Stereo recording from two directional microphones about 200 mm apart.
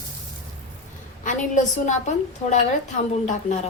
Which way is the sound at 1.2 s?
40° left (ahead or behind).